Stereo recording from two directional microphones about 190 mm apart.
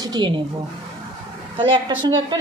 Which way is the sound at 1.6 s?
25° right (ahead or behind).